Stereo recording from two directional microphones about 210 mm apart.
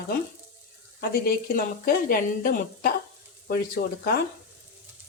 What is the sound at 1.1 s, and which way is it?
Speech, 45° left (ahead or behind).